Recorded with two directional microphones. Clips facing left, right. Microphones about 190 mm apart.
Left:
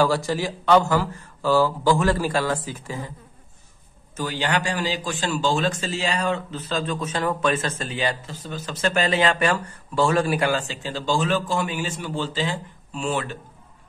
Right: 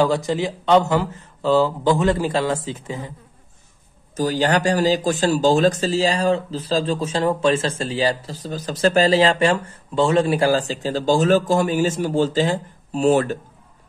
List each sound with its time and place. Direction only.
0.0 s speech: 20° right (ahead or behind)
4.2 s speech: 40° right (ahead or behind)